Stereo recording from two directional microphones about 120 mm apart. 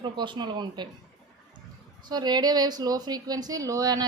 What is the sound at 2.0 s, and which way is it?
Speech, 35° right (ahead or behind).